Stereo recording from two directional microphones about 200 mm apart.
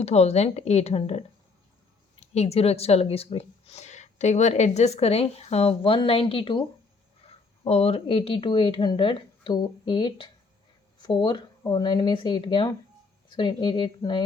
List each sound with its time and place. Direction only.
0.0 s speech: 30° left (ahead or behind)
2.2 s speech: 30° left (ahead or behind)